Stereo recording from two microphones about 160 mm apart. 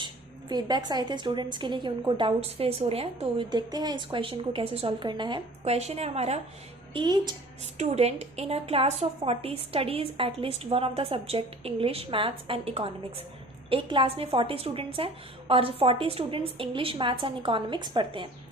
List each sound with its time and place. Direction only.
0.0 s a woman's voice: 25° right (ahead or behind); by 6.4 s 40° right (ahead or behind)
6.9 s a woman's voice: 30° right (ahead or behind)
7.8 s a woman's voice: 45° right (ahead or behind)